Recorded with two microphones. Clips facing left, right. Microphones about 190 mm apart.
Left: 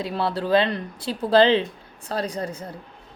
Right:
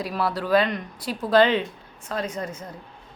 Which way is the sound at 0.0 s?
25° left (ahead or behind).